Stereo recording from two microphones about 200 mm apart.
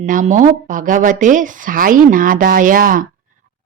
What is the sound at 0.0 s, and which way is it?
Speech, 40° right (ahead or behind).